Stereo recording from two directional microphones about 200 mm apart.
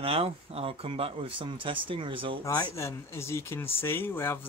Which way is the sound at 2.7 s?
15° left (ahead or behind).